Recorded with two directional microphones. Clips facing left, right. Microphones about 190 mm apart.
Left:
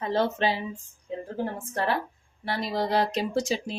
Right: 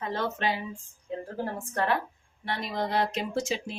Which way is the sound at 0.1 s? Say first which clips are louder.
Left 5 dB; 30° left (ahead or behind).